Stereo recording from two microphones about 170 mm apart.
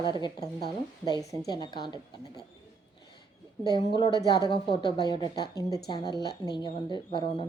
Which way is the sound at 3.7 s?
25° left (ahead or behind).